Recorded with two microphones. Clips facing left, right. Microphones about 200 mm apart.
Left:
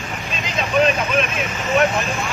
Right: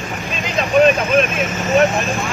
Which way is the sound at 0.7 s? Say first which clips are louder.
Right 5 dB; 45° right (ahead or behind).